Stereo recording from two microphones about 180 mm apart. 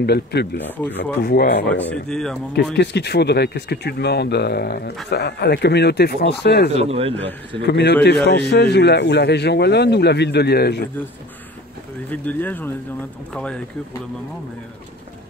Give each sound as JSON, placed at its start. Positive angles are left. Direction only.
{"t": 0.0, "sound": "speech", "side_deg": 65}
{"t": 1.8, "sound": "speech", "side_deg": 5}
{"t": 2.5, "sound": "a man's voice", "side_deg": 70}
{"t": 6.7, "sound": "speech", "side_deg": -35}
{"t": 7.6, "sound": "a man's voice", "side_deg": 70}
{"t": 12.1, "sound": "speech", "side_deg": 10}